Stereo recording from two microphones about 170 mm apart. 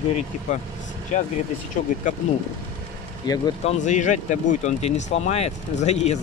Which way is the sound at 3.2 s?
25° left (ahead or behind).